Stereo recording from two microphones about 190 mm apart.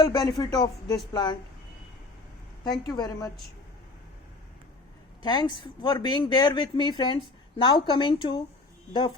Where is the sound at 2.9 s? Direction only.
20° left (ahead or behind).